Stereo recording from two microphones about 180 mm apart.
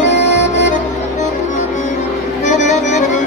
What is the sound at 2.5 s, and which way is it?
Music, 40° left (ahead or behind).